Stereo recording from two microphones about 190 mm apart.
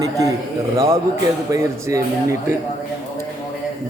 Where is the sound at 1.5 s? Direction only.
15° right (ahead or behind).